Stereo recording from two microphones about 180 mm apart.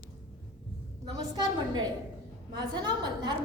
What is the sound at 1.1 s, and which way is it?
A woman's voice, 20° right (ahead or behind).